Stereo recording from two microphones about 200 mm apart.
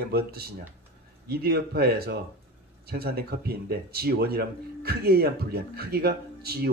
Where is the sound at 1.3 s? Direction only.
50° right (ahead or behind).